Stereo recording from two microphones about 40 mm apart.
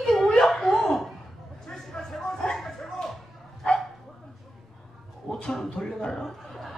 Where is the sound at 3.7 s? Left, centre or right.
Left.